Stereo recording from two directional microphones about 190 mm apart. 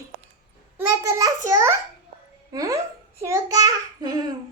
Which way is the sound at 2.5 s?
20° right (ahead or behind).